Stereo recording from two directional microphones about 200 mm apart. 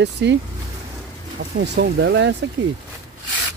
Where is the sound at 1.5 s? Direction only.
55° right (ahead or behind).